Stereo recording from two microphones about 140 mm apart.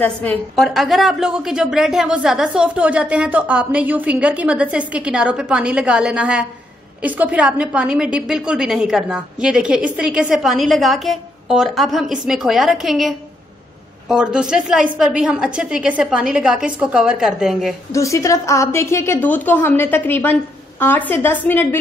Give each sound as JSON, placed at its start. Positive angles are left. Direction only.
{"t": 0.0, "sound": "a woman's voice", "side_deg": 10}
{"t": 0.6, "sound": "a woman's voice", "side_deg": 0}
{"t": 17.9, "sound": "a woman's voice", "side_deg": 20}